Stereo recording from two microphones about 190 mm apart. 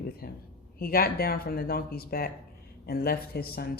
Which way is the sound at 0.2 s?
50° left (ahead or behind).